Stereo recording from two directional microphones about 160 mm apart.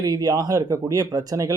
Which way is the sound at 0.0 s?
20° right (ahead or behind).